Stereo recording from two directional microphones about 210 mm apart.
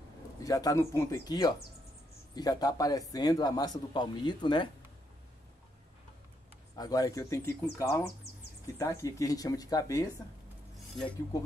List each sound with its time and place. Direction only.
0.4 s speech: 15° left (ahead or behind)
6.8 s speech: 15° left (ahead or behind)